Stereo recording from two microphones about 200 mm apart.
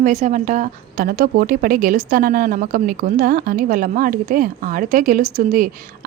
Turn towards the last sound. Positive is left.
turn(degrees=-45)  # may be behind; listen again after turning